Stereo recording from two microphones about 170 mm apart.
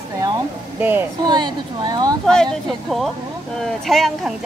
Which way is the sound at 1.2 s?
25° right (ahead or behind).